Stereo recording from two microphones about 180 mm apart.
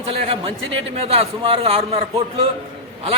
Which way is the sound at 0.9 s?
30° right (ahead or behind).